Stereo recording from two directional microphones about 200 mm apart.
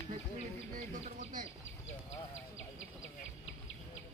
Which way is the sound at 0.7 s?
40° right (ahead or behind).